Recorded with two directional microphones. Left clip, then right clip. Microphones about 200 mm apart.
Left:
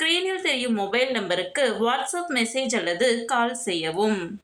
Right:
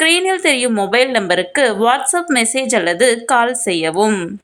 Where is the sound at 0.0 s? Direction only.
40° right (ahead or behind).